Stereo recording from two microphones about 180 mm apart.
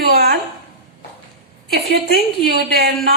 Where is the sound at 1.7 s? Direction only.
55° right (ahead or behind).